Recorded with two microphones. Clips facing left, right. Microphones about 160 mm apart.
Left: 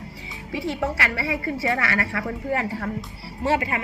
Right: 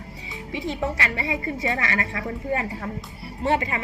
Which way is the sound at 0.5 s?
20° right (ahead or behind).